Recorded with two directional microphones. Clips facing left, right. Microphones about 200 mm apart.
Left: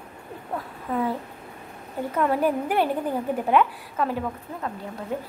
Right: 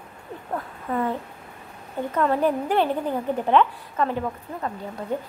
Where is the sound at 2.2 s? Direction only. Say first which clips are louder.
Right 1 dB; 10° left (ahead or behind).